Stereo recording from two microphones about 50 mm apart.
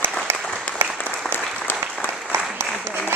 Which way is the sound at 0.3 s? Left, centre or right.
Right.